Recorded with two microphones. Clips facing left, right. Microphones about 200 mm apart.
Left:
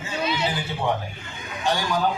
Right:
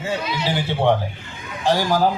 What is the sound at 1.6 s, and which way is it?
Speech, 90° right.